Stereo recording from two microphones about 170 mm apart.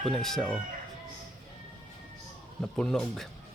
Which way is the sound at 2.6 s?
5° left (ahead or behind).